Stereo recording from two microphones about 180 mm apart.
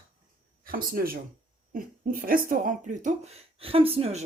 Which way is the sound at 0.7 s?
55° right (ahead or behind).